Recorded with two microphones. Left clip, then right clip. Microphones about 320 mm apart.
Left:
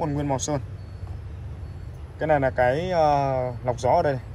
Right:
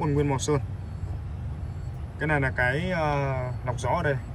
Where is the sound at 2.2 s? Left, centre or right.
Centre.